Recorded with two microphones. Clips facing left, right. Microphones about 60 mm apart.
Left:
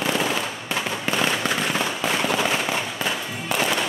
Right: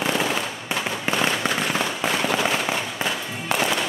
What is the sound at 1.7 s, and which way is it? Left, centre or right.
Firecracker, right.